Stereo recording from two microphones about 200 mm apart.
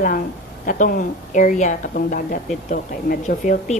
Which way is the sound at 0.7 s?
45° left (ahead or behind).